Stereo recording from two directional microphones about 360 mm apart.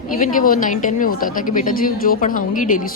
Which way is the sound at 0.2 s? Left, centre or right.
Left.